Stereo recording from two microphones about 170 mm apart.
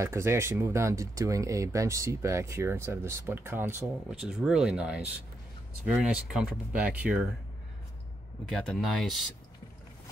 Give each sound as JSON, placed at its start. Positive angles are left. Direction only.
{"t": 0.0, "sound": "speech", "side_deg": -15}
{"t": 8.5, "sound": "speech", "side_deg": 0}